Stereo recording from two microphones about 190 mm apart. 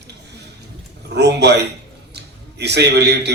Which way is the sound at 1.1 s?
60° right (ahead or behind).